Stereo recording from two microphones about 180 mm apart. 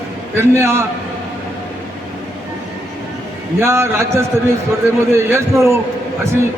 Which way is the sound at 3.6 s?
15° right (ahead or behind).